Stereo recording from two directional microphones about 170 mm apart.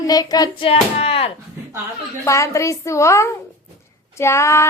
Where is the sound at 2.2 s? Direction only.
15° left (ahead or behind).